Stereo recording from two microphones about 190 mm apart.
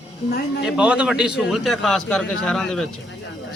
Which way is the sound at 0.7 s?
5° right (ahead or behind).